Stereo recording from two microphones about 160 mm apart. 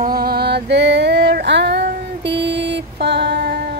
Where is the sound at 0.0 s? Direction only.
70° right (ahead or behind); by 3.8 s 85° right.